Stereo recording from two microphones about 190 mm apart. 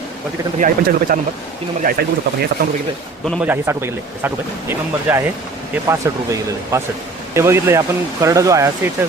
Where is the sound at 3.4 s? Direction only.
10° right (ahead or behind).